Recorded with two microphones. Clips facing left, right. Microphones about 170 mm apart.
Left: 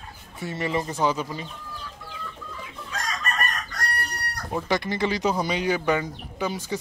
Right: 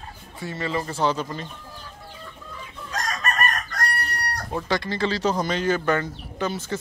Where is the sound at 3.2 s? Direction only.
60° right (ahead or behind).